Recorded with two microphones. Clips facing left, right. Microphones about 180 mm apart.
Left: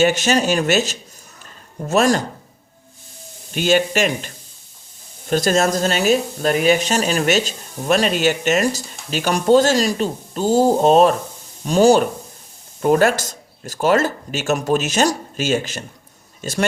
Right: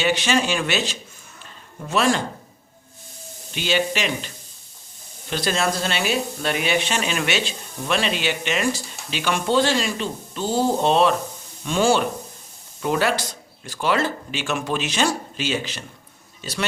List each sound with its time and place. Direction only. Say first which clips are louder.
0.0 s speech: left 5 dB; 45° left (ahead or behind)
3.5 s speech: left 6 dB; 45° left (ahead or behind)
5.3 s speech: left 6 dB; 45° left (ahead or behind)